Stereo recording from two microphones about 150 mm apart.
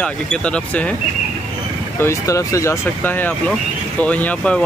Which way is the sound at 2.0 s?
20° left (ahead or behind).